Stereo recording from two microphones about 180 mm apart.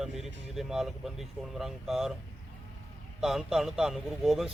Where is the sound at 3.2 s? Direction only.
Centre (ahead or behind).